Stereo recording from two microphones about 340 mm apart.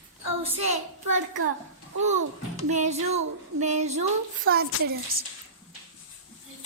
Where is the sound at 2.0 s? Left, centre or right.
Right.